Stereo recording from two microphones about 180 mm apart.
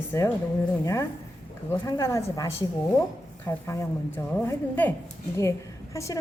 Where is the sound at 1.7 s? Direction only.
15° left (ahead or behind).